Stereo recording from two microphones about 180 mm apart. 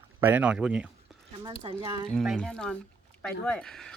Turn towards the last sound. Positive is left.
turn(degrees=5)  # may be behind; listen again after turning